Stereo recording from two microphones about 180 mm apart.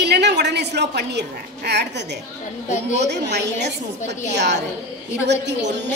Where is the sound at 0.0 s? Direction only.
70° right (ahead or behind).